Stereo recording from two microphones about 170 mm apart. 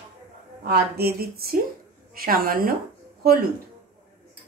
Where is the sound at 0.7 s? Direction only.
65° right (ahead or behind).